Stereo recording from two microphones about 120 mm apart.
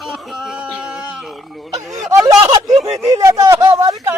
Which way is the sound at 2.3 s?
25° right (ahead or behind).